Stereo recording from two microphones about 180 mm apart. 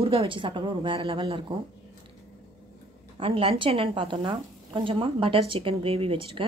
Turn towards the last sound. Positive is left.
turn(degrees=-30)  # may be behind; listen again after turning